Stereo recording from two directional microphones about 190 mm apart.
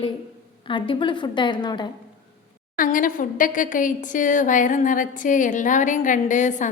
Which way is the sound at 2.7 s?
45° left (ahead or behind).